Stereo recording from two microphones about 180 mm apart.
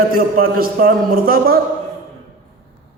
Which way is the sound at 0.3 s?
55° right (ahead or behind).